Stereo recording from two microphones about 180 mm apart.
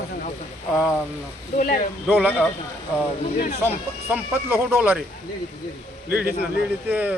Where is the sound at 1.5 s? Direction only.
50° left (ahead or behind).